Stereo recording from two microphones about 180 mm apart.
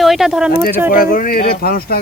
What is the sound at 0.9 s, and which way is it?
Speech, 50° left (ahead or behind).